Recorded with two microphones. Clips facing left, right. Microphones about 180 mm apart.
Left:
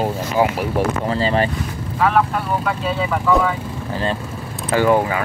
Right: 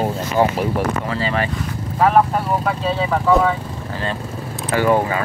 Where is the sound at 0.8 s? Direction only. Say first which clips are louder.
Left 2 dB; 30° left (ahead or behind).